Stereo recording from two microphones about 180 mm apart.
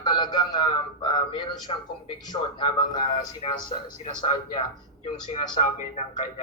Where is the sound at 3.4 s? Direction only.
35° left (ahead or behind).